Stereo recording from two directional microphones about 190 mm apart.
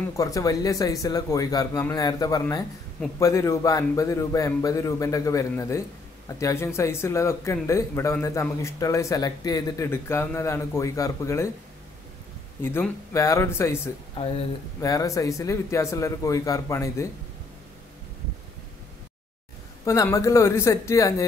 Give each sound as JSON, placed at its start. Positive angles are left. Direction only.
{"t": 0.1, "sound": "a man's voice", "side_deg": 15}
{"t": 12.6, "sound": "a man's voice", "side_deg": 10}
{"t": 14.8, "sound": "a man's voice", "side_deg": 15}
{"t": 19.8, "sound": "a man's voice", "side_deg": 15}